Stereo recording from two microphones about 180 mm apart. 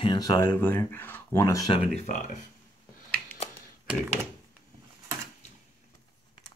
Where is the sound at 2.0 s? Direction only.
45° left (ahead or behind).